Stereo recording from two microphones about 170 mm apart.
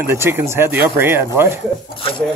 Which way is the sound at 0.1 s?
15° right (ahead or behind).